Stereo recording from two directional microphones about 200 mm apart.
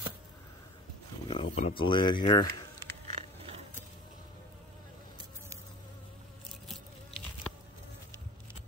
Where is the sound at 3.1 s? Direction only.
30° right (ahead or behind).